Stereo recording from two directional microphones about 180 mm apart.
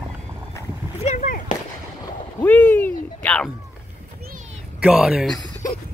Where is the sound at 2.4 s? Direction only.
10° left (ahead or behind).